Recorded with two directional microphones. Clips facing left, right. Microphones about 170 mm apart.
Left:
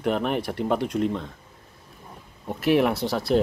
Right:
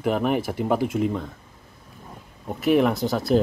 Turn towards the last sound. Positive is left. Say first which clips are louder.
# right 1 dB
turn(degrees=0)  # may be behind; listen again after turning